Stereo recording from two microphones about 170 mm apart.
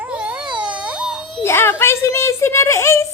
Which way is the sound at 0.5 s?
5° right (ahead or behind).